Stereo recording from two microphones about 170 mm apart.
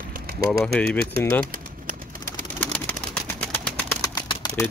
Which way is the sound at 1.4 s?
55° right (ahead or behind).